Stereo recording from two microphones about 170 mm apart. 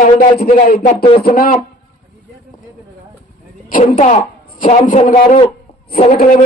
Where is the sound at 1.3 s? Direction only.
55° left (ahead or behind).